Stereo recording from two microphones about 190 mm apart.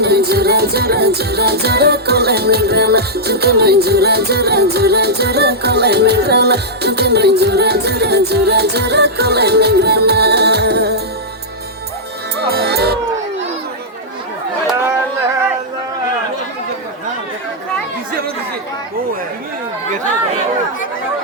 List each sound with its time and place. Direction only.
0.0 s music: 55° right (ahead or behind)
12.4 s music: 55° right (ahead or behind)